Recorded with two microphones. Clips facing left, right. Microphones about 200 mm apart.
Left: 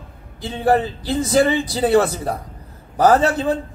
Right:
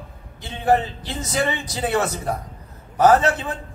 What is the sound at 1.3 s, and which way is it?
A man's voice, 35° left (ahead or behind).